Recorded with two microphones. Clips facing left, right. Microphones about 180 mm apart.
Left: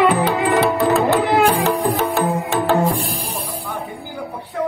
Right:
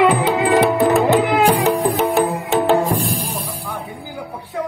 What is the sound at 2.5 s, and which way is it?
Music, 20° right (ahead or behind).